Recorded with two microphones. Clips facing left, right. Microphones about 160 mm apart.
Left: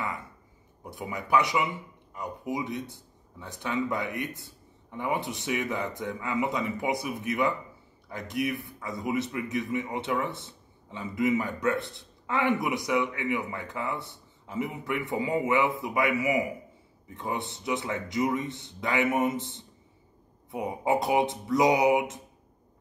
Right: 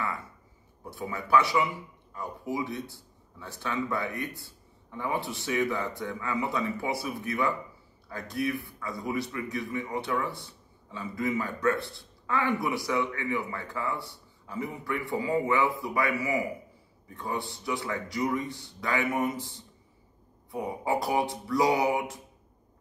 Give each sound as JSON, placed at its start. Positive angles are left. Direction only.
{"t": 0.8, "sound": "a man's voice", "side_deg": 20}